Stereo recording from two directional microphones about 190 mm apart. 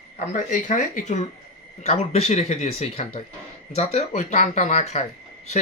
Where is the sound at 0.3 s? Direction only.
40° left (ahead or behind).